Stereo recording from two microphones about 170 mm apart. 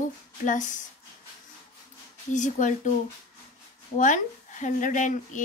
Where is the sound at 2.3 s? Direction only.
45° left (ahead or behind).